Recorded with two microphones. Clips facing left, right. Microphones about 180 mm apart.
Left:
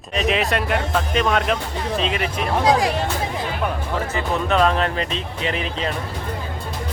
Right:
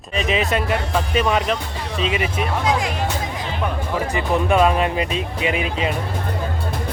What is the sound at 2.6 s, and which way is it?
Speech, 35° left (ahead or behind).